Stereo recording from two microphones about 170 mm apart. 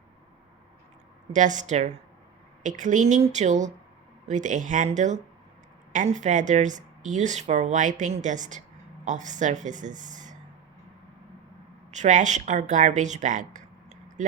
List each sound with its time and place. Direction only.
1.3 s a woman's voice: 45° right (ahead or behind)
11.9 s a woman's voice: 45° right (ahead or behind)